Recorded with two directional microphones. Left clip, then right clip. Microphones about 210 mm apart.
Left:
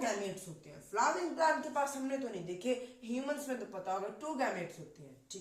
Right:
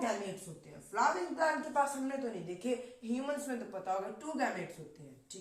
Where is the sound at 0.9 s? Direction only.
15° right (ahead or behind).